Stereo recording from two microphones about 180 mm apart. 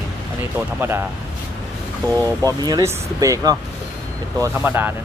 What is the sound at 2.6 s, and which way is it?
Speech, 20° right (ahead or behind).